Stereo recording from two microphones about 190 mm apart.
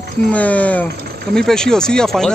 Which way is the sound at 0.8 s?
55° right (ahead or behind).